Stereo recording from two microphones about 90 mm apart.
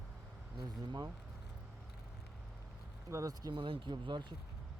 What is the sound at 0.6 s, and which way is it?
Speech, 50° right (ahead or behind).